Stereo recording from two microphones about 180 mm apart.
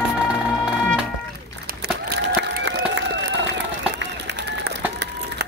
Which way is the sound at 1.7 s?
55° right (ahead or behind).